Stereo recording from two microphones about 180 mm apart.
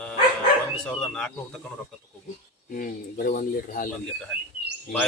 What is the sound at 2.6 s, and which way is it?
Speech, 50° left (ahead or behind).